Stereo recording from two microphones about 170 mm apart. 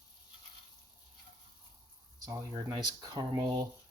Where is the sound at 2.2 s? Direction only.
20° right (ahead or behind).